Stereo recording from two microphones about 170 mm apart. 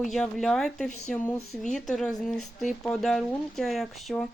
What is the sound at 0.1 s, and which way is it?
Speech, centre (ahead or behind).